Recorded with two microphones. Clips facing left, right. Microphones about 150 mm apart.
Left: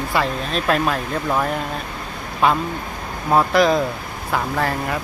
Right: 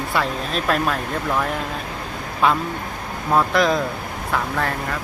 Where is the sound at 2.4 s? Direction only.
Centre (ahead or behind).